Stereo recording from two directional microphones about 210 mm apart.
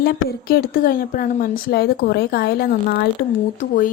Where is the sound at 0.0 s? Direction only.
45° left (ahead or behind).